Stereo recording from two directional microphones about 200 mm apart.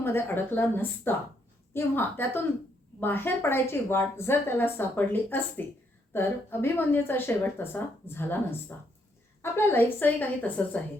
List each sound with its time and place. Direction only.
0.0 s a woman's voice: 10° left (ahead or behind)